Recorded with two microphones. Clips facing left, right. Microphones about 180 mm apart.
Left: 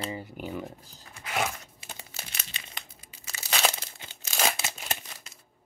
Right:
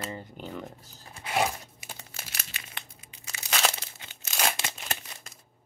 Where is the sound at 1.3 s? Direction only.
30° right (ahead or behind).